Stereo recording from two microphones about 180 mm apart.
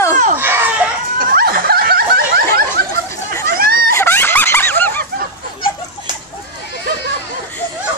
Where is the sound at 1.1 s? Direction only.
55° right (ahead or behind).